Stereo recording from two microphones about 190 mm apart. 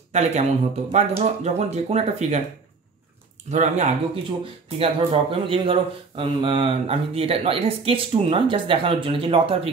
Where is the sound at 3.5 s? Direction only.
40° right (ahead or behind).